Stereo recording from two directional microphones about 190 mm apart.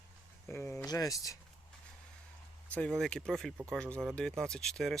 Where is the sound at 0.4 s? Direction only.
15° left (ahead or behind).